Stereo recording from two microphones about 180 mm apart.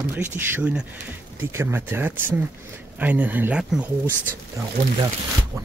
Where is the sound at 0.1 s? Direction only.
10° right (ahead or behind).